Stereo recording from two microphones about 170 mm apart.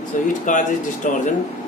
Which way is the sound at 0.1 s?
50° left (ahead or behind).